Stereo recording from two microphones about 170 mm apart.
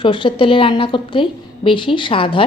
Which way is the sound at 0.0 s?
30° left (ahead or behind).